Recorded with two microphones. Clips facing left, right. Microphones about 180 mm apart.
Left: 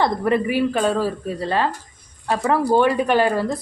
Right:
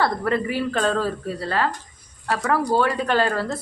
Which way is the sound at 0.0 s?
15° left (ahead or behind).